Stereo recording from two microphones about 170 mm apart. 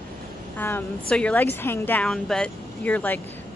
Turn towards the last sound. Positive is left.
turn(degrees=10)  # may be behind; listen again after turning